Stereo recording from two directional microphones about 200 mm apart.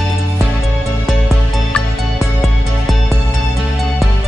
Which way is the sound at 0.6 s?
Centre (ahead or behind).